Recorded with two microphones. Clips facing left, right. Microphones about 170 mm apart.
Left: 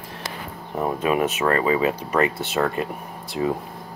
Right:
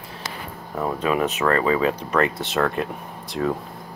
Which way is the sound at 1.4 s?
15° left (ahead or behind).